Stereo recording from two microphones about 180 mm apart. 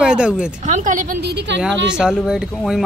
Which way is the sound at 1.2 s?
70° right (ahead or behind).